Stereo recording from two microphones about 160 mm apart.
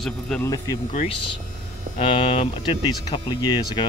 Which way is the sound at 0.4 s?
20° left (ahead or behind).